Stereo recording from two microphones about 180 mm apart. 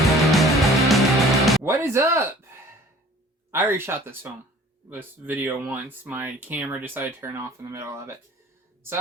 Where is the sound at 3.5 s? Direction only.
15° right (ahead or behind).